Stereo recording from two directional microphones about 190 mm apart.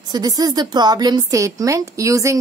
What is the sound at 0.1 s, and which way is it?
A woman's voice, 20° right (ahead or behind).